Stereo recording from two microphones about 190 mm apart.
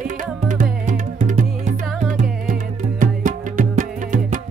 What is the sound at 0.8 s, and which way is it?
Music, 45° right (ahead or behind).